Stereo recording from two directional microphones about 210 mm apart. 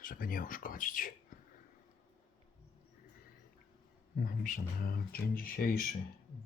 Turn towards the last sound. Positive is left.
turn(degrees=45)  # may be behind; listen again after turning